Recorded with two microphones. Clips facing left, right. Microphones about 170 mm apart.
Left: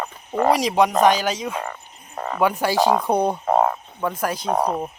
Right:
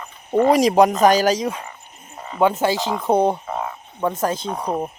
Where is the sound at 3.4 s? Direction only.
55° left (ahead or behind).